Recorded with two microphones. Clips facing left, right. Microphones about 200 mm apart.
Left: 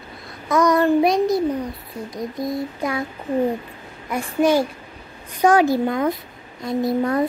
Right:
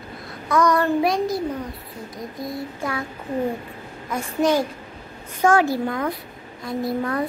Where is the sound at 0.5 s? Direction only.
15° left (ahead or behind).